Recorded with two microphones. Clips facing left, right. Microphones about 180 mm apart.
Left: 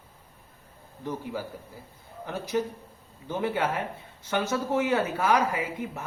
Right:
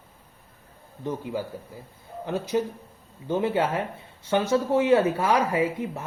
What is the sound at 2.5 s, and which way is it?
Speech, 20° right (ahead or behind).